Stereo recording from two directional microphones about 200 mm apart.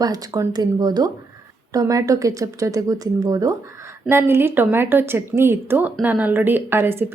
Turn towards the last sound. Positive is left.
turn(degrees=-10)  # may be behind; listen again after turning